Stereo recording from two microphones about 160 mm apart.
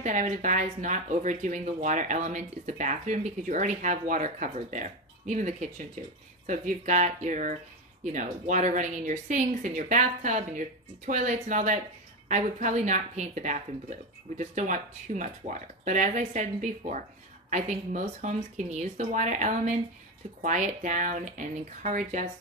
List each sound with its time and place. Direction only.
0.0 s speech: 50° right (ahead or behind)